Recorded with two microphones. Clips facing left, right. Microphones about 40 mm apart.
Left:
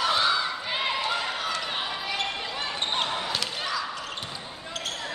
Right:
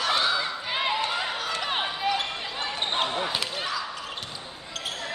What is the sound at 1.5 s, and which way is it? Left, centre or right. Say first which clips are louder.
Basketball bounce: right 2 dB; right.